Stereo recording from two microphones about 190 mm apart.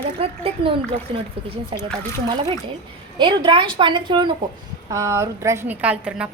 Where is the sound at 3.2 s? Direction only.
25° right (ahead or behind); by 6.2 s 5° right (ahead or behind).